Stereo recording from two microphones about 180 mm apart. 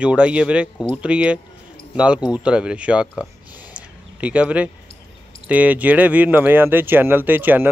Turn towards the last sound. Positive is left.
turn(degrees=-10)  # may be behind; listen again after turning